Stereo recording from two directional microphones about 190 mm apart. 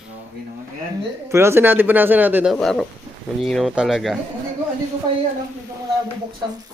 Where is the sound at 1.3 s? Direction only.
15° right (ahead or behind).